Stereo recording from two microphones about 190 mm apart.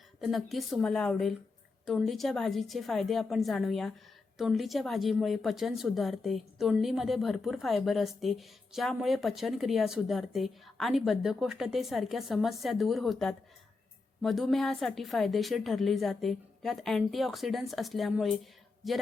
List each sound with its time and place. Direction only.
0.2 s a woman's voice: centre (ahead or behind)